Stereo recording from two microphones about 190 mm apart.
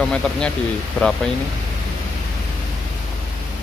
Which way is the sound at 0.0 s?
5° left (ahead or behind).